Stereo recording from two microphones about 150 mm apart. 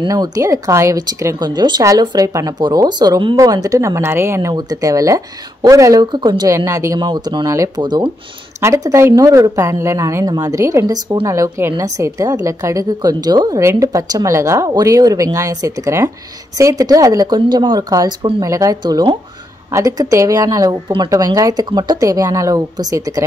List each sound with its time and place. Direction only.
0.0 s speech: 25° right (ahead or behind)